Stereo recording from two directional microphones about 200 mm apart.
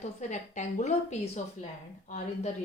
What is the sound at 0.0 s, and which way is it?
Speech, 35° left (ahead or behind).